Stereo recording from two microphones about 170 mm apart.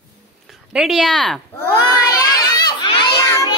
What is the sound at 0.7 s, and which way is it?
Child singing, centre (ahead or behind).